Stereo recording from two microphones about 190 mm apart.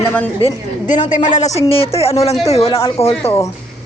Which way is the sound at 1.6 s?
30° left (ahead or behind).